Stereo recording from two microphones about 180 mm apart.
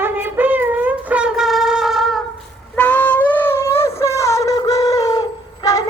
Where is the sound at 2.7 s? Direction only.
10° left (ahead or behind).